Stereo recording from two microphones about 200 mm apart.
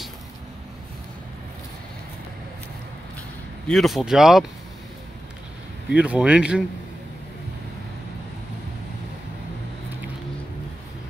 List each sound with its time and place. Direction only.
3.6 s speech: centre (ahead or behind)
5.9 s speech: 5° right (ahead or behind)